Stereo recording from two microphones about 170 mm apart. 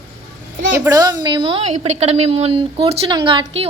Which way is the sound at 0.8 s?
20° right (ahead or behind).